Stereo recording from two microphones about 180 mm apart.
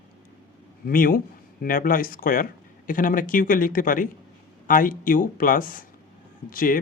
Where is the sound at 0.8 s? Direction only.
50° left (ahead or behind).